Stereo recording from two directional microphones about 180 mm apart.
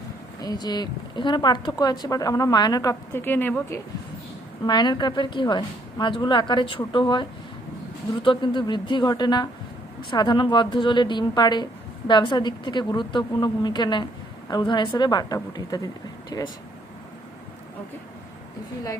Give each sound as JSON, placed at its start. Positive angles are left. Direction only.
{"t": 0.4, "sound": "speech", "side_deg": 20}
{"t": 4.6, "sound": "speech", "side_deg": 25}